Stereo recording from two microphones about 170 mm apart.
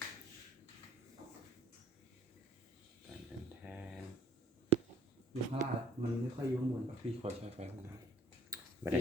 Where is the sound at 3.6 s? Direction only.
10° right (ahead or behind).